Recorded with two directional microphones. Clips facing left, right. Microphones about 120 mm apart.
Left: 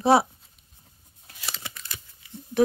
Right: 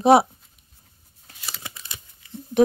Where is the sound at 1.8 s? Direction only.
20° right (ahead or behind).